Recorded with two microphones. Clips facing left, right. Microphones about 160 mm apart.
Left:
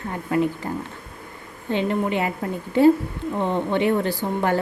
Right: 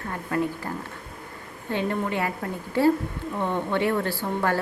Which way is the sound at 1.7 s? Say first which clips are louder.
Left 4 dB; 20° left (ahead or behind).